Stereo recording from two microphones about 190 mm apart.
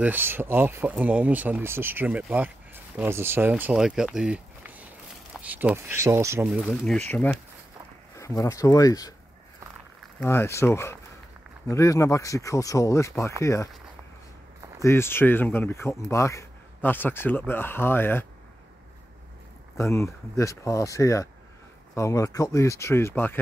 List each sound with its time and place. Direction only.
0.0 s speech: 10° right (ahead or behind)
6.6 s speech: 5° left (ahead or behind)
10.2 s speech: 15° left (ahead or behind)
14.8 s speech: 15° left (ahead or behind)
19.8 s speech: 15° left (ahead or behind)